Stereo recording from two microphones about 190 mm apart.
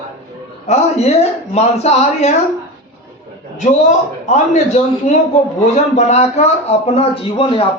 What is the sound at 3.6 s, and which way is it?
Speech, 40° left (ahead or behind).